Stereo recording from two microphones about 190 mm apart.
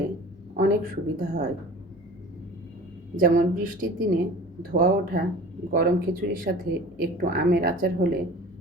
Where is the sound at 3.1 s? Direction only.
50° right (ahead or behind).